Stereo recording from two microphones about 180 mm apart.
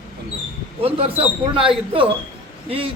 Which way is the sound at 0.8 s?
30° right (ahead or behind).